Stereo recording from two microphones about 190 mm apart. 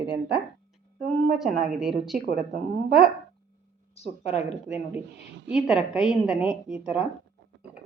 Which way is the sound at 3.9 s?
35° left (ahead or behind).